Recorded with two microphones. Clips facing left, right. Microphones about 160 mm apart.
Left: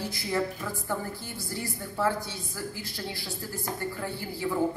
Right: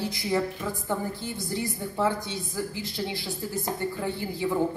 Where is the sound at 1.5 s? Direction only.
20° right (ahead or behind).